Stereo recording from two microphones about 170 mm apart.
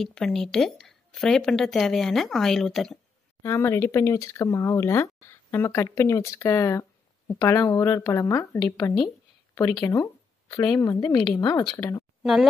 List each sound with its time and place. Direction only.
0.0 s a woman's voice: 5° left (ahead or behind)
3.4 s speech: 15° left (ahead or behind)
12.2 s speech: centre (ahead or behind)